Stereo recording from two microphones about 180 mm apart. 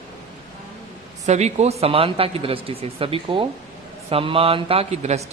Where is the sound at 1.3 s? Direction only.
40° right (ahead or behind).